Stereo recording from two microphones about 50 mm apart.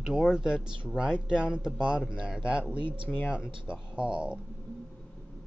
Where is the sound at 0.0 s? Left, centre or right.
Centre.